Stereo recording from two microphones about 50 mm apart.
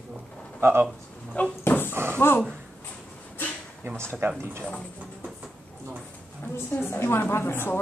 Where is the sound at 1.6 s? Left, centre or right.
Left.